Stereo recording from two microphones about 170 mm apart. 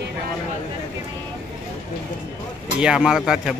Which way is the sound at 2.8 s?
5° right (ahead or behind).